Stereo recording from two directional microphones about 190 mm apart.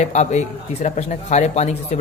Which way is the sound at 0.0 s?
40° left (ahead or behind).